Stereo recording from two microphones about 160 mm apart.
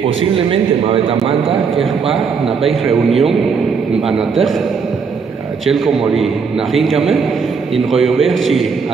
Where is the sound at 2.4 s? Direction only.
35° right (ahead or behind).